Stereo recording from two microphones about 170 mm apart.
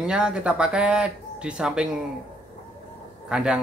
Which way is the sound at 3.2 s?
5° right (ahead or behind).